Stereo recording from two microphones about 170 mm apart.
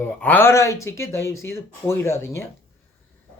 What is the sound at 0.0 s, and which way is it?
A man's voice, 10° left (ahead or behind).